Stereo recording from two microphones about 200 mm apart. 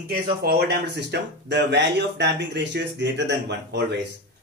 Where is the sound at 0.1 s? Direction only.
50° right (ahead or behind).